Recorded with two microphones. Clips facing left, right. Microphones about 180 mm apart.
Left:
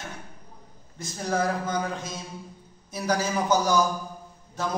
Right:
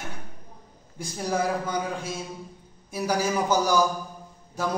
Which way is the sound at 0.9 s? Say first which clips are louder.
Even; 10° right (ahead or behind).